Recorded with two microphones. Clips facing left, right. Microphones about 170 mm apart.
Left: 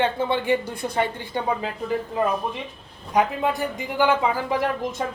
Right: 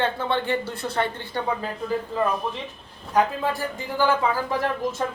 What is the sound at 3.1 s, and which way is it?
Speech, 20° left (ahead or behind).